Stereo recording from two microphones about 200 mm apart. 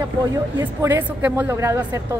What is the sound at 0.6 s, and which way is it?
A woman's voice, 15° right (ahead or behind).